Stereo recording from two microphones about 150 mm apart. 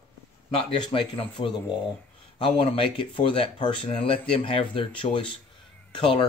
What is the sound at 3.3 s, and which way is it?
Speech, 40° left (ahead or behind).